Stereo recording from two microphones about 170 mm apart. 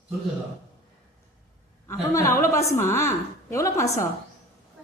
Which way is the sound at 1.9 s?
15° left (ahead or behind).